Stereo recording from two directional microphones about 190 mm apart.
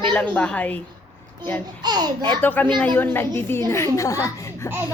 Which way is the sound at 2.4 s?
10° left (ahead or behind).